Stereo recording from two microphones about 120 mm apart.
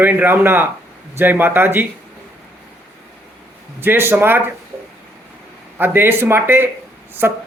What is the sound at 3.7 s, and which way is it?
Speech, 20° right (ahead or behind).